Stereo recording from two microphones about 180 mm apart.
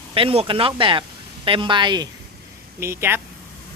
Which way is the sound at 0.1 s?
30° right (ahead or behind).